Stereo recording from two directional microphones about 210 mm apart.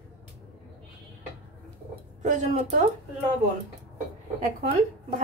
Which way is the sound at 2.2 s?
35° right (ahead or behind).